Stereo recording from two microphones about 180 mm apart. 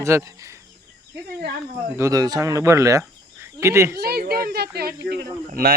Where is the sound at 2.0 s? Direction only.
20° right (ahead or behind).